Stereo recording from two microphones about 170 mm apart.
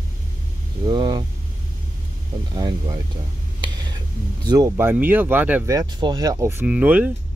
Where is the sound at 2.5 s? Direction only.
20° right (ahead or behind).